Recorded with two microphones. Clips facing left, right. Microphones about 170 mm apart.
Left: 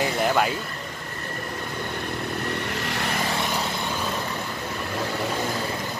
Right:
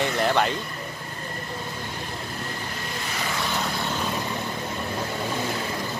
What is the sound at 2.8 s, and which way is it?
Vehicle, 75° left (ahead or behind).